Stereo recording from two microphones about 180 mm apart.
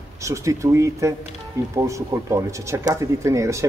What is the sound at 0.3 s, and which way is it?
Speech, 15° right (ahead or behind).